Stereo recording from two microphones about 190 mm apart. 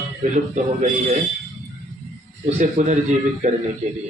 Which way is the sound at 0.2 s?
40° right (ahead or behind).